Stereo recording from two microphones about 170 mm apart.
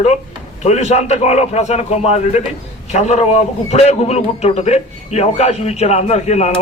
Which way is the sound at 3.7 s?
40° left (ahead or behind).